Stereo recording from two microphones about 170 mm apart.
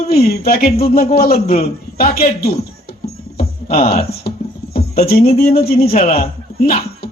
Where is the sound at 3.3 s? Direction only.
60° left (ahead or behind).